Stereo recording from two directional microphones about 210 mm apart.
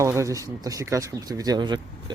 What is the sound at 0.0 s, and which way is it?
Speech, 15° right (ahead or behind).